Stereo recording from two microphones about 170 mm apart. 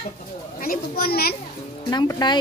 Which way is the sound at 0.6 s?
60° left (ahead or behind).